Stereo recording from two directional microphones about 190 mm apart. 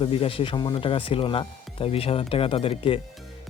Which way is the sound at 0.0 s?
30° left (ahead or behind).